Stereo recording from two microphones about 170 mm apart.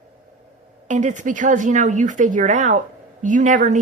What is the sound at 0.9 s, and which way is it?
Speech, 45° right (ahead or behind).